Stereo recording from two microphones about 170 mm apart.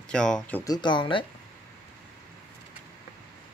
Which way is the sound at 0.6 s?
25° left (ahead or behind).